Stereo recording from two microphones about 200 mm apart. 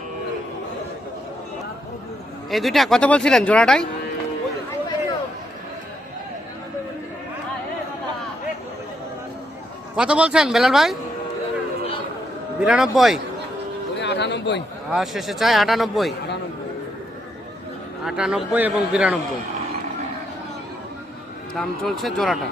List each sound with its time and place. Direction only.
2.5 s speech: centre (ahead or behind)
9.9 s speech: 5° right (ahead or behind)
12.5 s speech: 5° right (ahead or behind)
13.9 s a sound: 60° left (ahead or behind)
14.9 s speech: centre (ahead or behind)
18.0 s speech: 5° right (ahead or behind)
21.6 s speech: centre (ahead or behind)